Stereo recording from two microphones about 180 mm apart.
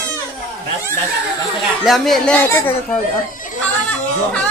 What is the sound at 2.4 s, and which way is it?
Speech, 15° left (ahead or behind).